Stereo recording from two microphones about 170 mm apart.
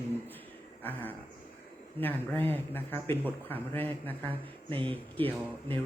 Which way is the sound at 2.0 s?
10° left (ahead or behind).